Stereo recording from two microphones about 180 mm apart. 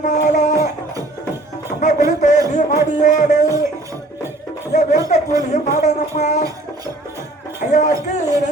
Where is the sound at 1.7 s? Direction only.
45° left (ahead or behind).